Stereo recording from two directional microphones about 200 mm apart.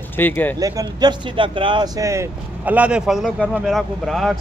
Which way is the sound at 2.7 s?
5° right (ahead or behind).